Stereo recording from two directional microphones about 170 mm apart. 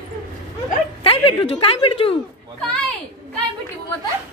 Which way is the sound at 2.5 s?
5° left (ahead or behind).